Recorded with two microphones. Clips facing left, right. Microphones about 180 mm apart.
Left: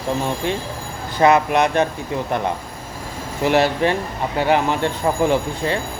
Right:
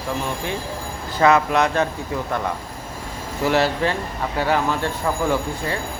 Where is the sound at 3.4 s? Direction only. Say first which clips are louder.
Left 3 dB; 20° left (ahead or behind).